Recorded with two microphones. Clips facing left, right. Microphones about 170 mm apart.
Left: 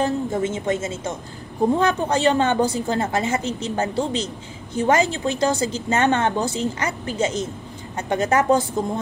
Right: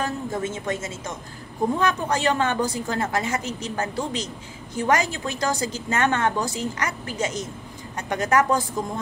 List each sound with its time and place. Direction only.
0.0 s a woman's voice: 25° left (ahead or behind)